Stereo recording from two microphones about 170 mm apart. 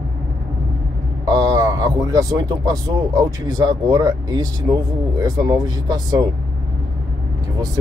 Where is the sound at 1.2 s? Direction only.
20° right (ahead or behind).